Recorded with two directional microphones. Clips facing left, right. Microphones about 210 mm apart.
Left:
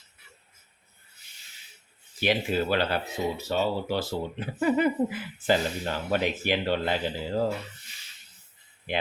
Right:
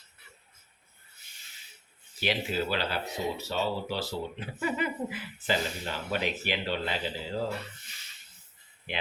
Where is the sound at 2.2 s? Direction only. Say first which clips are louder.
Left 4 dB; 55° left (ahead or behind).